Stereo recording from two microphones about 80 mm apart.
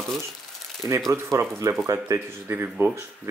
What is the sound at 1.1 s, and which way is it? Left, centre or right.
Speech, right.